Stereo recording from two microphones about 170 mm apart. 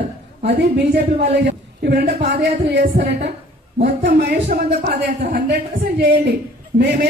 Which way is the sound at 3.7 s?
60° right (ahead or behind).